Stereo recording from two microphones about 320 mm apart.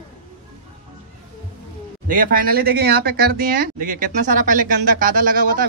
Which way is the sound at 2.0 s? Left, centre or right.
Right.